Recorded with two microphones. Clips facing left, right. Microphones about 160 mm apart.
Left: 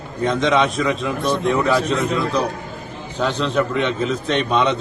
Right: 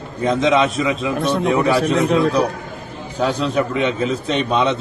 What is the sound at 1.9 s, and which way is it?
Speech, 80° right.